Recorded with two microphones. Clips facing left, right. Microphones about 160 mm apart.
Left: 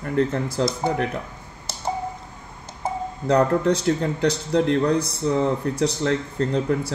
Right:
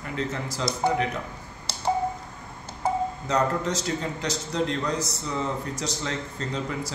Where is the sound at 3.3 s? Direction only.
60° left (ahead or behind).